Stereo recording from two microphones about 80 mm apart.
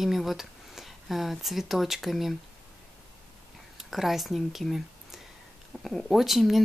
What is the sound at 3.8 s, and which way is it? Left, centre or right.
A woman's voice, centre.